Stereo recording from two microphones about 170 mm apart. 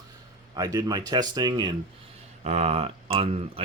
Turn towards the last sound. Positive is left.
turn(degrees=-35)  # may be behind; listen again after turning